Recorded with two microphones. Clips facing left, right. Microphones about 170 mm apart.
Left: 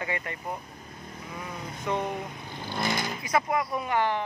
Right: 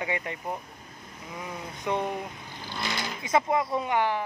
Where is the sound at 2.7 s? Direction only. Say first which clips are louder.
Left 4 dB; 50° left (ahead or behind).